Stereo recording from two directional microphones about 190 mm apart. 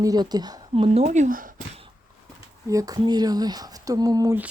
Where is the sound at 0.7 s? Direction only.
35° right (ahead or behind).